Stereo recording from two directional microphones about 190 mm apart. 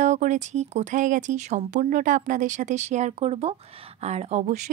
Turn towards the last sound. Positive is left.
turn(degrees=-35)  # may be behind; listen again after turning